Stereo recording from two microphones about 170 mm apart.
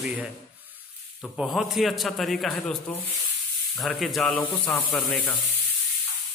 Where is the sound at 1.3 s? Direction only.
5° left (ahead or behind).